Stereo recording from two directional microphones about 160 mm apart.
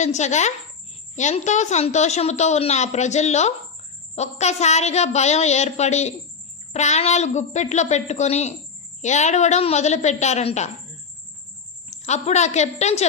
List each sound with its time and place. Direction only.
0.0 s a woman's voice: 45° left (ahead or behind)
11.9 s a woman's voice: 45° left (ahead or behind)